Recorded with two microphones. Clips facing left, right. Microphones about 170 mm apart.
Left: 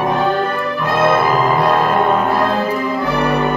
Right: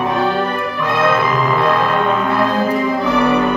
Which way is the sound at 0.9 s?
45° left (ahead or behind).